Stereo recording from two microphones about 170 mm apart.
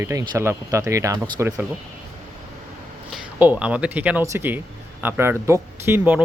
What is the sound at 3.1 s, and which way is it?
Speech, 10° right (ahead or behind).